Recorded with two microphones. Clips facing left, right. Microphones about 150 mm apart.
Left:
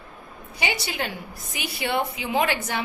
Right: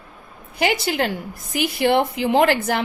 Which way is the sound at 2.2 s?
55° right (ahead or behind).